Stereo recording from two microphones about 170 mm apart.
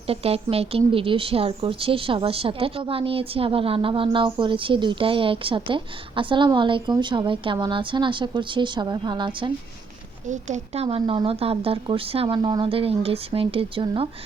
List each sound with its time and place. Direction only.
0.1 s a woman's voice: 35° right (ahead or behind)
10.2 s a woman's voice: 45° right (ahead or behind)